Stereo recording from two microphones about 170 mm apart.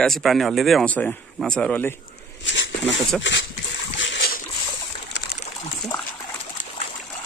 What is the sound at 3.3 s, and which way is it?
Speech, 90° left.